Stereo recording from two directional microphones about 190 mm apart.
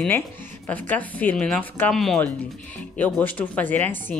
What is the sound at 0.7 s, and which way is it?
A woman's voice, 10° left (ahead or behind).